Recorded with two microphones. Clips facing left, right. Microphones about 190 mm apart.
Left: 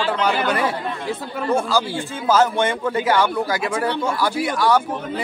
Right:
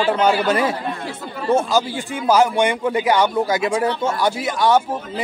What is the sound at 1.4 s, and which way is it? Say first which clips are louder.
A man's voice: right 3 dB; 20° right (ahead or behind).